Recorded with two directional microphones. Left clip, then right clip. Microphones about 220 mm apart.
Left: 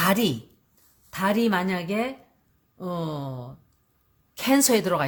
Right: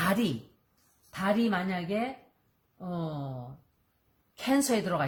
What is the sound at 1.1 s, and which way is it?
Speech, 50° left (ahead or behind).